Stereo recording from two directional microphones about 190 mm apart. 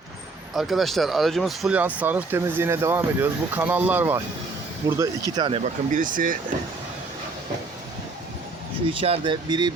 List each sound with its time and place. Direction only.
0.5 s speech: centre (ahead or behind); by 5.6 s 25° right (ahead or behind)
5.9 s speech: 45° right (ahead or behind)
8.9 s speech: 30° right (ahead or behind)